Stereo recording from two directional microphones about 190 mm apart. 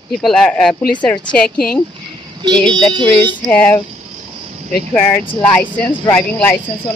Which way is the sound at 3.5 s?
10° left (ahead or behind).